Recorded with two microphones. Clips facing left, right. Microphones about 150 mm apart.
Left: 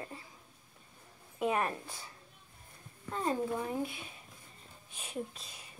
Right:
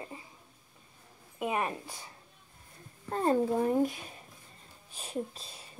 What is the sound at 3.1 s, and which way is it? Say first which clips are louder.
Speech: right 6 dB; 45° right (ahead or behind).